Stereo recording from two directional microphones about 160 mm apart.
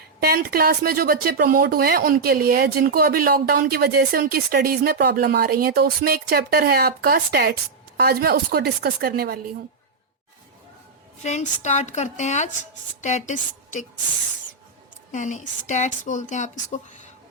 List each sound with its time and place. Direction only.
0.2 s speech: 70° right (ahead or behind)
11.2 s a woman's voice: 45° left (ahead or behind)
15.1 s a woman's voice: 50° left (ahead or behind)